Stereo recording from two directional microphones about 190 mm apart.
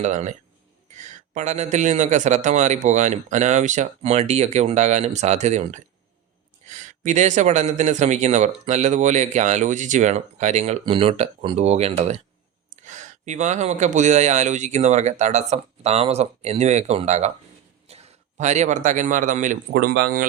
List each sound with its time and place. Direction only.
0.0 s a man's voice: 40° right (ahead or behind); by 20.2 s 55° right (ahead or behind)